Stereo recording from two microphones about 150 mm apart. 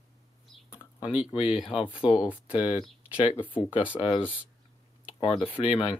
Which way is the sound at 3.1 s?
35° left (ahead or behind).